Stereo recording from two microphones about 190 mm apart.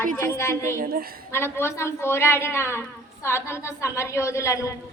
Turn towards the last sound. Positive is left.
turn(degrees=15)  # may be behind; listen again after turning